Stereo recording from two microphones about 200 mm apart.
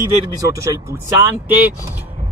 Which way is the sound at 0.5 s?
15° right (ahead or behind).